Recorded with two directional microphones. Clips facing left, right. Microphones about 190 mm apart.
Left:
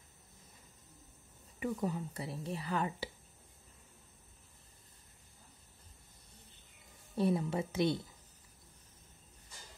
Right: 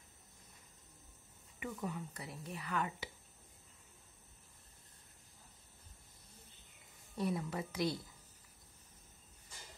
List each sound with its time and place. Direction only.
1.6 s speech: 35° left (ahead or behind)
7.2 s a woman's voice: 25° left (ahead or behind)